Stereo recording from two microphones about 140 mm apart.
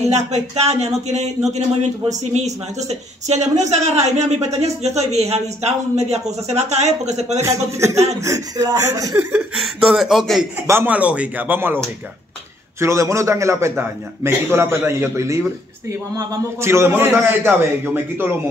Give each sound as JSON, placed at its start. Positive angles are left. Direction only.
{"t": 0.1, "sound": "a man's voice", "side_deg": -50}
{"t": 7.4, "sound": "a man's voice", "side_deg": -20}
{"t": 9.6, "sound": "a man's voice", "side_deg": 0}
{"t": 10.7, "sound": "a man's voice", "side_deg": -15}
{"t": 12.8, "sound": "a man's voice", "side_deg": -20}